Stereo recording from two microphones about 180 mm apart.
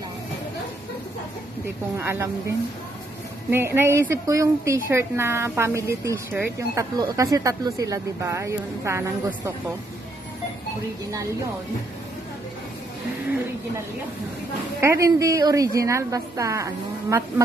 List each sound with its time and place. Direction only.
2.0 s a woman's voice: 15° right (ahead or behind)
3.4 s a woman's voice: 10° right (ahead or behind)
14.8 s a woman's voice: 15° right (ahead or behind)